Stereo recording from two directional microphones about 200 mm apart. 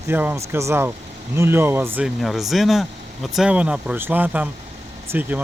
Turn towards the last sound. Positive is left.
turn(degrees=-10)  # may be behind; listen again after turning